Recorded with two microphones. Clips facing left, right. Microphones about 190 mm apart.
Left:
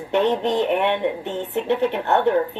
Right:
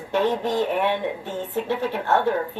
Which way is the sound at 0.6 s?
20° left (ahead or behind).